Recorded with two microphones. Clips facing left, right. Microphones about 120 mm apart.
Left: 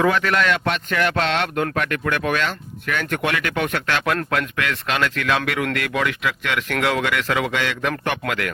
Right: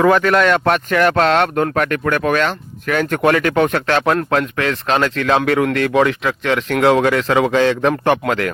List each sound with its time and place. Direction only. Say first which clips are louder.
0.0 s speech: right 6 dB; 45° right (ahead or behind)